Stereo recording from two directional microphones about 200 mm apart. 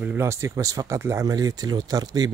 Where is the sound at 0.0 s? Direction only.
10° right (ahead or behind).